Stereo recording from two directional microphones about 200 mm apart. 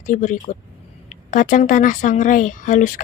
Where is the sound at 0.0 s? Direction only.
40° left (ahead or behind).